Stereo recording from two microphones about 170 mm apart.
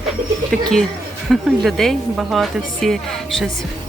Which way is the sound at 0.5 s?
5° left (ahead or behind).